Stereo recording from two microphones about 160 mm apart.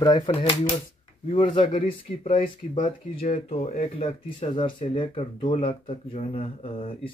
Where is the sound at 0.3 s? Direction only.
35° left (ahead or behind).